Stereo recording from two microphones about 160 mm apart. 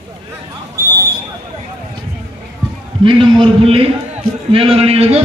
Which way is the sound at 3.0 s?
30° right (ahead or behind).